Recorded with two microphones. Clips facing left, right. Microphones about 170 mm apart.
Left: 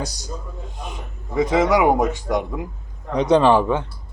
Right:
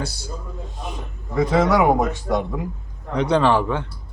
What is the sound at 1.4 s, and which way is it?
A man's voice, 15° left (ahead or behind).